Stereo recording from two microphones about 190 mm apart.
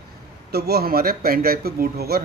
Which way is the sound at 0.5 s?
55° right (ahead or behind).